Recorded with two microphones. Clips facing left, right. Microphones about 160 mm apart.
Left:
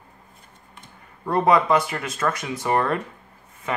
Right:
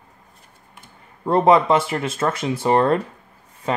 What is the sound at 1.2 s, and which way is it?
Speech, 25° right (ahead or behind).